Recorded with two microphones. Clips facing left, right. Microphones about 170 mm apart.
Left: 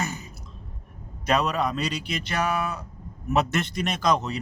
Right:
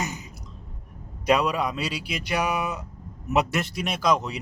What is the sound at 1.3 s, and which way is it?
Speech, 10° right (ahead or behind).